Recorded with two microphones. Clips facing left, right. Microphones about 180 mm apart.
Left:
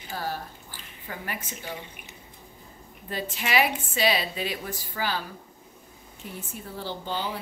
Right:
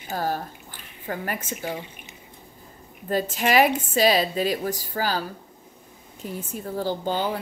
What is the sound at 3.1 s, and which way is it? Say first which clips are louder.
A woman's voice: right 6 dB; 45° right (ahead or behind).